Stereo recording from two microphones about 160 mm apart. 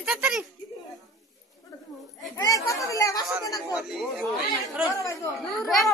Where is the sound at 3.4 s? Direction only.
20° left (ahead or behind).